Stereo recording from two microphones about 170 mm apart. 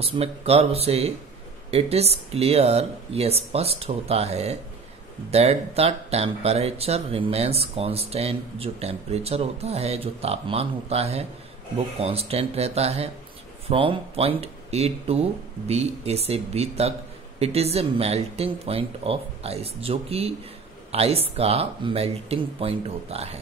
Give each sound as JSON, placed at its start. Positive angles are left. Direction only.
{"t": 0.0, "sound": "speech", "side_deg": -35}